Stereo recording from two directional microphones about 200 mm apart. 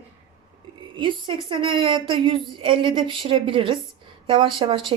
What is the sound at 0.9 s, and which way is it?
A woman's voice, 25° right (ahead or behind).